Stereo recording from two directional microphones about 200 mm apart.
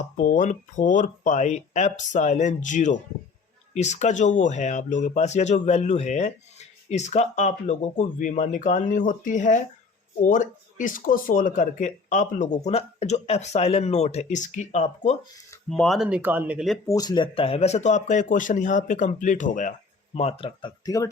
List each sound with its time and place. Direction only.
0.2 s speech: 40° left (ahead or behind)
15.7 s speech: centre (ahead or behind)
16.8 s speech: 20° left (ahead or behind)